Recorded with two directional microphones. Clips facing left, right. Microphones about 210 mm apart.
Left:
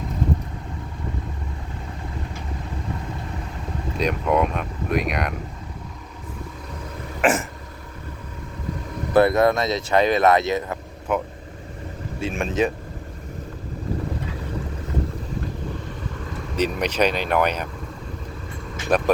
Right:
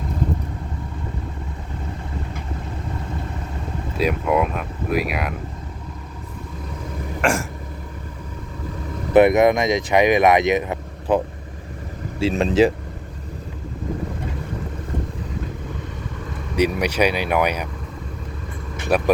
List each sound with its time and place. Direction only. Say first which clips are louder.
3.9 s speech: right 1 dB; 5° right (ahead or behind)
7.2 s throat clearing: left 1 dB; 5° left (ahead or behind)
9.1 s speech: right 3 dB; 20° right (ahead or behind)
11.1 s speech: right 5 dB; 30° right (ahead or behind)
12.3 s speech: right 6 dB; 35° right (ahead or behind)
16.6 s speech: right 2 dB; 10° right (ahead or behind)
18.9 s speech: right 1 dB; 10° right (ahead or behind)